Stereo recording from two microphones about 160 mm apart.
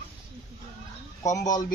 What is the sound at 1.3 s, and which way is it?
Speech, 25° left (ahead or behind).